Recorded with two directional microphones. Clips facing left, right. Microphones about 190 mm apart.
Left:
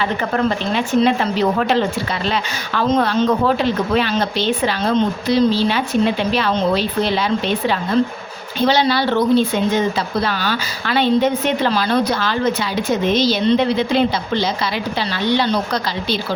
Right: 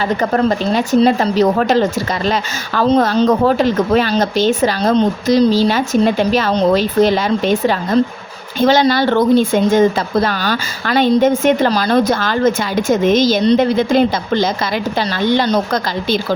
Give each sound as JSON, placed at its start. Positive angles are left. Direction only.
{"t": 0.0, "sound": "a woman's voice", "side_deg": -40}